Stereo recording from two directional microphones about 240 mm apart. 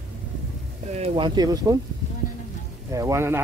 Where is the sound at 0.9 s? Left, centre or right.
Right.